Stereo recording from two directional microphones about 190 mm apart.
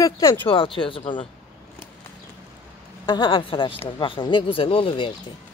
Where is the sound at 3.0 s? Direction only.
25° left (ahead or behind).